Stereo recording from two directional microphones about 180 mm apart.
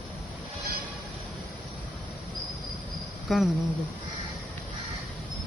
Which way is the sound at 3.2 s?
Centre (ahead or behind).